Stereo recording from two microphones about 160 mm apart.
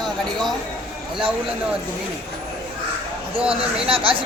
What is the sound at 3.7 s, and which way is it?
Speech, 35° right (ahead or behind).